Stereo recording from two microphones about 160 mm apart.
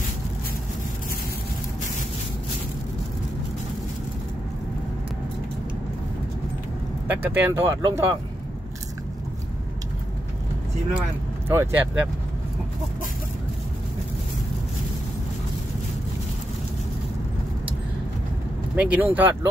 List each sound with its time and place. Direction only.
7.1 s speech: 10° right (ahead or behind)
11.4 s speech: 15° right (ahead or behind)
18.8 s speech: 10° right (ahead or behind)